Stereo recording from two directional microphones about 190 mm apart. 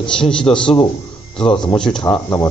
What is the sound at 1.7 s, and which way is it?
Speech, 5° left (ahead or behind).